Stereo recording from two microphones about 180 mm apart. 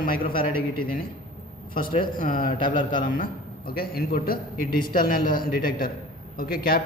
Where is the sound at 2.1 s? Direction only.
50° left (ahead or behind).